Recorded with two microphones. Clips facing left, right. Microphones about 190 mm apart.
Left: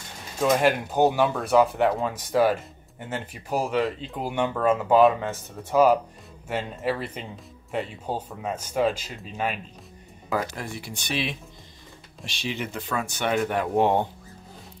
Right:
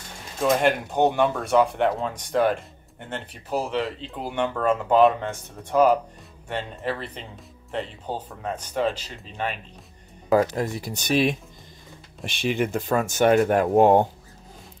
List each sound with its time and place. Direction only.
0.4 s speech: centre (ahead or behind)
10.3 s speech: 40° right (ahead or behind)